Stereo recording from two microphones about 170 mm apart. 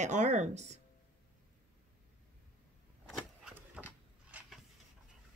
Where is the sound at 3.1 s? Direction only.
Centre (ahead or behind).